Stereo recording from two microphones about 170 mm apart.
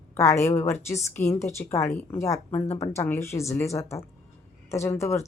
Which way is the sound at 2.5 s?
40° left (ahead or behind).